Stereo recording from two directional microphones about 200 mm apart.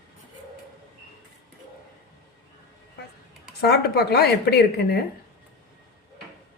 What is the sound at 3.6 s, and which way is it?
A woman's voice, 55° left (ahead or behind).